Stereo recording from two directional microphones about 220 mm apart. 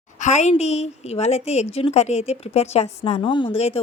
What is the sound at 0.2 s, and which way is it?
A woman's voice, 30° left (ahead or behind).